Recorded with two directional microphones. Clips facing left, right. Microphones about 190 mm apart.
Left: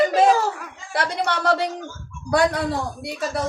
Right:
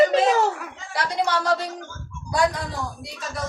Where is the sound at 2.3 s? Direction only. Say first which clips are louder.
Left 4 dB; 65° left (ahead or behind).